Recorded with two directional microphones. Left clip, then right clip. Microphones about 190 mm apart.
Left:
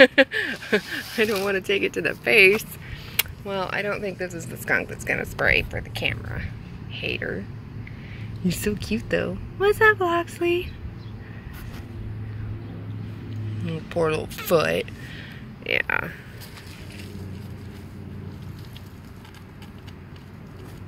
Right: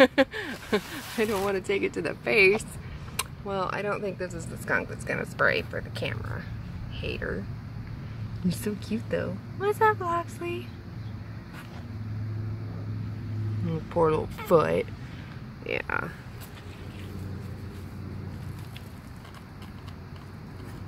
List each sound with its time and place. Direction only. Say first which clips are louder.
0.0 s speech: left 6 dB; 10° left (ahead or behind)
6.9 s speech: left 6 dB; 5° left (ahead or behind)
8.5 s speech: left 6 dB; 25° left (ahead or behind)
13.7 s speech: left 1 dB; 5° right (ahead or behind)
15.6 s speech: left 6 dB; centre (ahead or behind)